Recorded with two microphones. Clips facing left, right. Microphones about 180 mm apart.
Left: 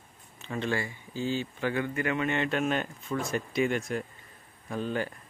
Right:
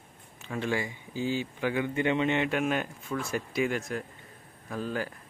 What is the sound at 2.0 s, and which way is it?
Speech, 25° right (ahead or behind).